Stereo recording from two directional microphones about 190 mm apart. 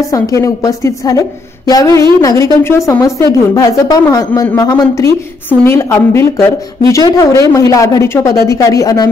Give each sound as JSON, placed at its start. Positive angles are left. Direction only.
{"t": 0.1, "sound": "a woman's voice", "side_deg": 15}